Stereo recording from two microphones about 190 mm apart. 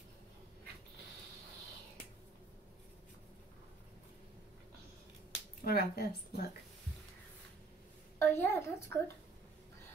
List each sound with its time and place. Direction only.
5.6 s speech: 55° left (ahead or behind)
8.2 s speech: 15° left (ahead or behind)